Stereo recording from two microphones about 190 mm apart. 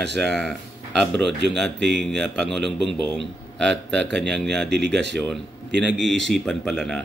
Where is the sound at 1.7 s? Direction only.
65° right (ahead or behind).